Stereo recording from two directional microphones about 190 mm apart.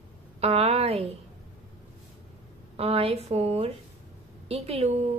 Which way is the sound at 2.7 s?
30° right (ahead or behind).